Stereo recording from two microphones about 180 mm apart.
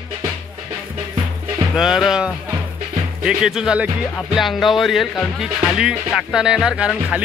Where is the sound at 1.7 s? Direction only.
5° right (ahead or behind).